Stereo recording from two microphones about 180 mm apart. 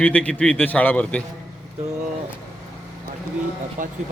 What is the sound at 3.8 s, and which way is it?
Speech, 45° right (ahead or behind).